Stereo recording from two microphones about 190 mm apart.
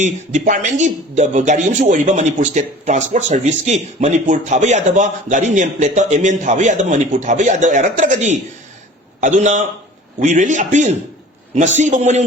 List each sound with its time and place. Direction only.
0.0 s speech: 40° right (ahead or behind)